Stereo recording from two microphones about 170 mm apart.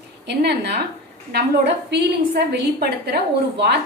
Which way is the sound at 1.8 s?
90° right.